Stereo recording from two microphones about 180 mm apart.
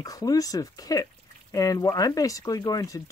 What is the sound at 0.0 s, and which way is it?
Speech, 20° left (ahead or behind).